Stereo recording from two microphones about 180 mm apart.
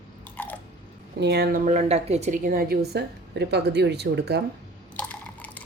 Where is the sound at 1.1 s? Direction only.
70° right (ahead or behind).